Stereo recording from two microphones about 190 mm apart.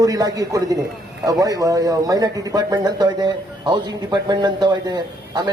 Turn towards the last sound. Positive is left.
turn(degrees=-20)  # may be behind; listen again after turning